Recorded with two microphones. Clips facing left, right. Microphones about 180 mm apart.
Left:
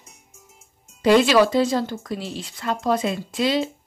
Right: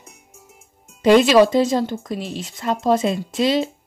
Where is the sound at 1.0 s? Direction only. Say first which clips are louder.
Right 3 dB; 20° right (ahead or behind).